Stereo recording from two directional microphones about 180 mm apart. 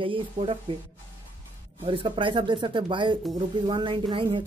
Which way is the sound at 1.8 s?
30° right (ahead or behind).